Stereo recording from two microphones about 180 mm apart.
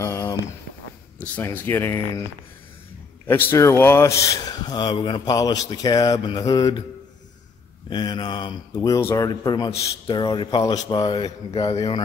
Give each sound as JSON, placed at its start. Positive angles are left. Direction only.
{"t": 0.0, "sound": "a sound", "side_deg": 15}
{"t": 1.3, "sound": "speech", "side_deg": 10}
{"t": 3.3, "sound": "a man's voice", "side_deg": 10}
{"t": 7.9, "sound": "a man's voice", "side_deg": 25}